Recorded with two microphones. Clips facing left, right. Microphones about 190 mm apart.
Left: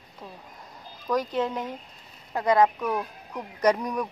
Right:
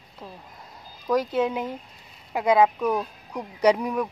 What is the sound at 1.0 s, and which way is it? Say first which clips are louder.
Speech: right 3 dB; 10° right (ahead or behind).